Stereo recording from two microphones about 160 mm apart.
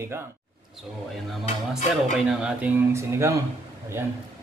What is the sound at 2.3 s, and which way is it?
Speech, 5° right (ahead or behind).